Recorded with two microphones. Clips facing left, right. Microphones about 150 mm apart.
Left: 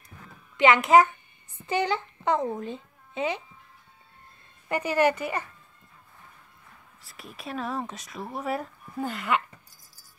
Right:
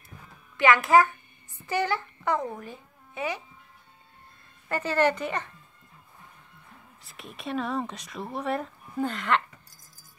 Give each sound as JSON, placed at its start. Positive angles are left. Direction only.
{"t": 0.6, "sound": "a child's voice", "side_deg": 20}
{"t": 4.6, "sound": "speech", "side_deg": 15}
{"t": 7.0, "sound": "speech", "side_deg": 0}